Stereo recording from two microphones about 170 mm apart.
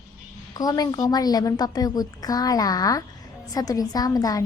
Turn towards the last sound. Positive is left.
turn(degrees=20)  # may be behind; listen again after turning